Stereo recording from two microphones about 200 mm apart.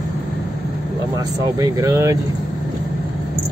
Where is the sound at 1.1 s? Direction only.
15° right (ahead or behind).